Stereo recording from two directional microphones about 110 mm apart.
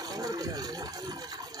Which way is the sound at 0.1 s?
35° right (ahead or behind).